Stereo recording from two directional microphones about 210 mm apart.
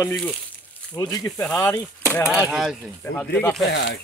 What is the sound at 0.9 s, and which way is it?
Speech, 20° left (ahead or behind).